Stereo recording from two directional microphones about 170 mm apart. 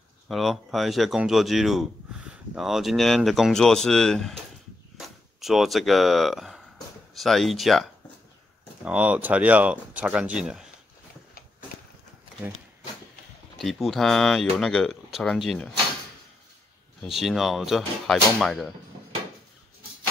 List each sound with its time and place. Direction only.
0.3 s speech: centre (ahead or behind)
13.6 s speech: centre (ahead or behind)
17.0 s speech: centre (ahead or behind)